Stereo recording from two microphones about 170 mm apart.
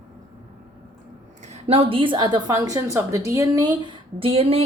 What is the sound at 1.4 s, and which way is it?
A woman's voice, 40° right (ahead or behind).